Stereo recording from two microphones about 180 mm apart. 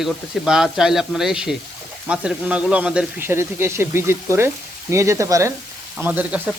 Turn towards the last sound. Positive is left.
turn(degrees=-10)  # may be behind; listen again after turning